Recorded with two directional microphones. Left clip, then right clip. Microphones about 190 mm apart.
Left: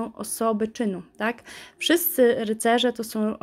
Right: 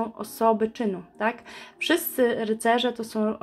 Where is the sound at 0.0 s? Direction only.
40° left (ahead or behind).